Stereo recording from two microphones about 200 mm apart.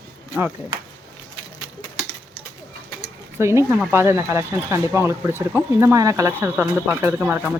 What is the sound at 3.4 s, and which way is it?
Speech, 15° right (ahead or behind).